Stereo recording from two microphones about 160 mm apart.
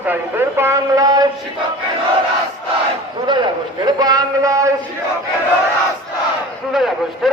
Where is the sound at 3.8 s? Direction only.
25° right (ahead or behind).